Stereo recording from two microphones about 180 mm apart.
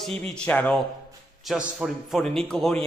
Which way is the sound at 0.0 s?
Centre (ahead or behind).